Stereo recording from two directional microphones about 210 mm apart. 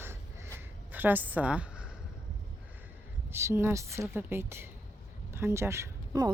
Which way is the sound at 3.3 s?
10° right (ahead or behind).